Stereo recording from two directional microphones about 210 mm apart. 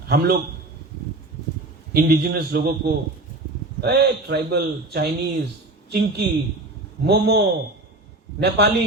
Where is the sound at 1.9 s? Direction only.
45° right (ahead or behind).